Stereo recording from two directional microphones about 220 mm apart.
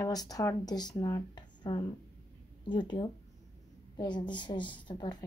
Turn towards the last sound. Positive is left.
turn(degrees=20)  # may be behind; listen again after turning